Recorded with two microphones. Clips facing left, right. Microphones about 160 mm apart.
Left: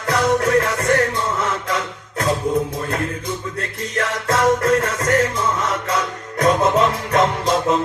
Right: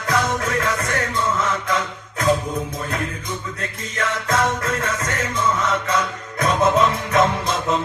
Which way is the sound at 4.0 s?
35° left (ahead or behind).